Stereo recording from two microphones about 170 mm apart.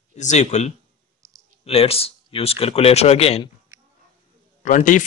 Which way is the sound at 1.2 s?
20° right (ahead or behind).